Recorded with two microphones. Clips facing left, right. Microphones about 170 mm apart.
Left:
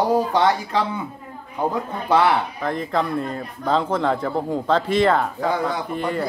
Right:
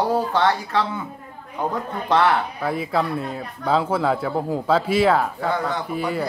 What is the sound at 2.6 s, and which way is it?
Speech, 10° right (ahead or behind).